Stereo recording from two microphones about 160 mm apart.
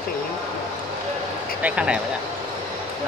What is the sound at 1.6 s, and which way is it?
Speech, 5° right (ahead or behind).